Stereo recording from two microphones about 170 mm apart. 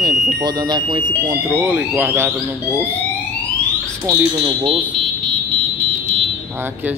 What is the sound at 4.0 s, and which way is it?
Speech, 20° right (ahead or behind).